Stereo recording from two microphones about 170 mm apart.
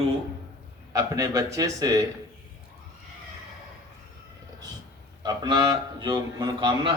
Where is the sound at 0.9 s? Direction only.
20° right (ahead or behind).